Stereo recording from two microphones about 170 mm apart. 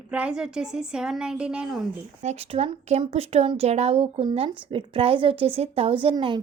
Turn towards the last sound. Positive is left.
turn(degrees=-30)  # may be behind; listen again after turning